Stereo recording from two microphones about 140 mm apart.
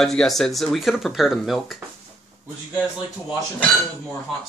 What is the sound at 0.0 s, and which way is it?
Speech, 5° left (ahead or behind).